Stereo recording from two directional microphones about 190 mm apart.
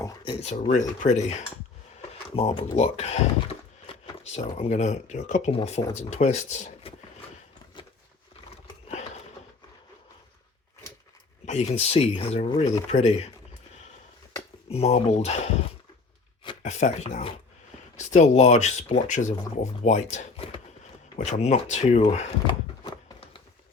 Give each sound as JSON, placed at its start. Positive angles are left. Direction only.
{"t": 0.0, "sound": "a sound", "side_deg": 20}
{"t": 0.4, "sound": "speech", "side_deg": 40}
{"t": 11.4, "sound": "speech", "side_deg": 35}
{"t": 14.7, "sound": "speech", "side_deg": 35}
{"t": 16.6, "sound": "speech", "side_deg": 35}
{"t": 22.1, "sound": "a sound", "side_deg": 30}